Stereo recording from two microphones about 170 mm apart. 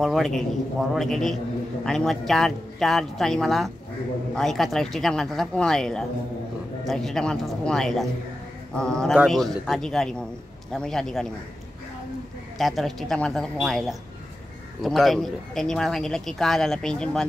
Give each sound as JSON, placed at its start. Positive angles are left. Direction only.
{"t": 0.0, "sound": "speech", "side_deg": 0}
{"t": 12.5, "sound": "speech", "side_deg": 0}